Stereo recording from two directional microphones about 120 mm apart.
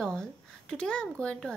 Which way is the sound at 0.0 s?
5° left (ahead or behind).